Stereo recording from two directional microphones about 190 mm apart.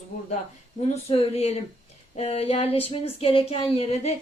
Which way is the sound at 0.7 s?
30° left (ahead or behind).